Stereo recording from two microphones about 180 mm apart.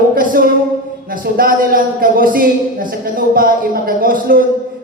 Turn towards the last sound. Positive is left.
turn(degrees=-50)  # may be behind; listen again after turning